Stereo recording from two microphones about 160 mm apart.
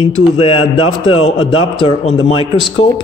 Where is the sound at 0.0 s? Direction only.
40° left (ahead or behind).